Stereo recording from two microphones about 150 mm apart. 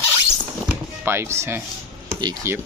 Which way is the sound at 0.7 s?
15° right (ahead or behind).